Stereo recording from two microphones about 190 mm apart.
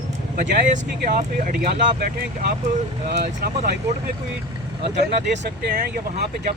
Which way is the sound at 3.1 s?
55° right (ahead or behind).